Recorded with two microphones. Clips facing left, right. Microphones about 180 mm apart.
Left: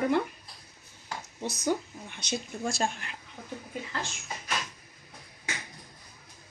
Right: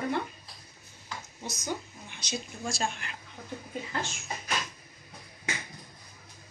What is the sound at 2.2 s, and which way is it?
Speech, 55° left (ahead or behind).